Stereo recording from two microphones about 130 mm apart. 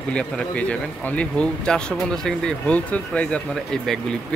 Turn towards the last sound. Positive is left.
turn(degrees=5)  # may be behind; listen again after turning